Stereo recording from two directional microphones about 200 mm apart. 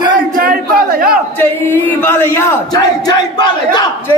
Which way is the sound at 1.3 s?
10° left (ahead or behind).